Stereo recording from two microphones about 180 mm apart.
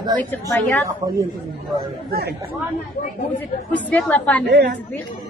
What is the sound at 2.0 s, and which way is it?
Speech, 60° right (ahead or behind).